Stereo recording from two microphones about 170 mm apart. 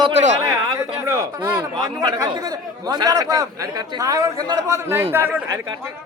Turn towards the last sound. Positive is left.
turn(degrees=-15)  # may be behind; listen again after turning